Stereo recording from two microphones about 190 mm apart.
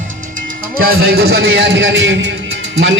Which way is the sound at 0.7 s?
50° right (ahead or behind).